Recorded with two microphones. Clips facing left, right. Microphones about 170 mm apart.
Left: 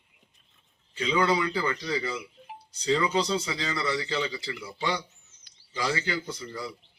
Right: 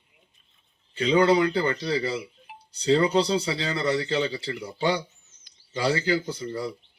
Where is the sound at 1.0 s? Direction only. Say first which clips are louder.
Right 6 dB; 35° right (ahead or behind).